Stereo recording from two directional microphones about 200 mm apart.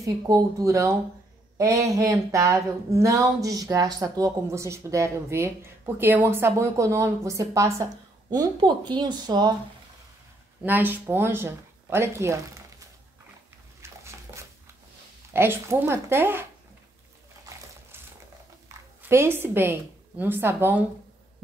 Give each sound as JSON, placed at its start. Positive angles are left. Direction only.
{"t": 0.0, "sound": "speech", "side_deg": -15}
{"t": 10.6, "sound": "speech", "side_deg": -10}
{"t": 13.7, "sound": "dog", "side_deg": -15}
{"t": 15.3, "sound": "speech", "side_deg": -10}
{"t": 18.7, "sound": "speech", "side_deg": -10}